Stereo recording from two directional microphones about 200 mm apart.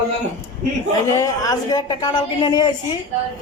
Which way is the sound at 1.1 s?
15° left (ahead or behind).